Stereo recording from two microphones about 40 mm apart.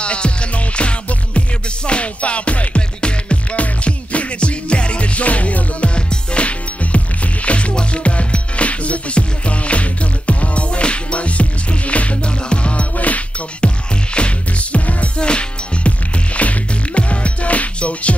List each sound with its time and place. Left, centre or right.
0.0 s music: left